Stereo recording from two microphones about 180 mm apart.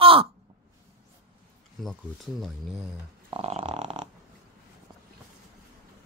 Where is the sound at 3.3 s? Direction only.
35° right (ahead or behind).